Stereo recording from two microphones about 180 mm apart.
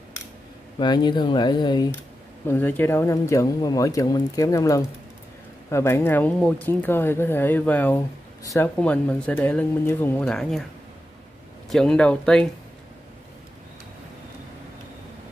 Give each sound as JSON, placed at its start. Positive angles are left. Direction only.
{"t": 0.7, "sound": "speech", "side_deg": 25}
{"t": 2.4, "sound": "speech", "side_deg": 10}
{"t": 11.7, "sound": "speech", "side_deg": 5}